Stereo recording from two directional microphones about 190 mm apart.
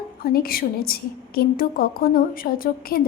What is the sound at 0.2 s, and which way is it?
A woman's voice, 50° left (ahead or behind).